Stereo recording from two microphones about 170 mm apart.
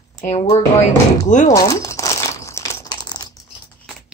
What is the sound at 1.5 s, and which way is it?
Crumpling, 20° left (ahead or behind).